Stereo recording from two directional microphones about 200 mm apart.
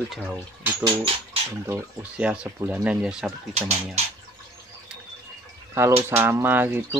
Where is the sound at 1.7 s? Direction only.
5° right (ahead or behind).